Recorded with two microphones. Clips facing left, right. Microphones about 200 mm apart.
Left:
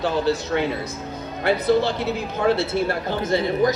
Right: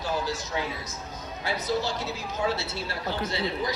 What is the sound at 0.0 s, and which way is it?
A man's voice, 65° left (ahead or behind).